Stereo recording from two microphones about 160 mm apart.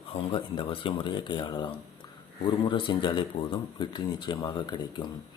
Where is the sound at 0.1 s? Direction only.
35° left (ahead or behind).